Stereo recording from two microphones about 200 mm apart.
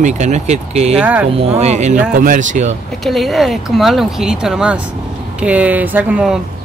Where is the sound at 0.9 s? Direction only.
10° right (ahead or behind).